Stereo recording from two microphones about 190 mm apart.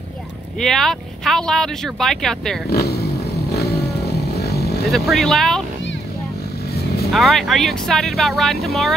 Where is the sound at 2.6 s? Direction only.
60° left (ahead or behind).